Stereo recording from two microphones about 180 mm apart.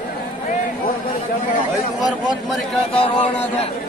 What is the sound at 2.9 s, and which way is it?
Speech, 30° left (ahead or behind).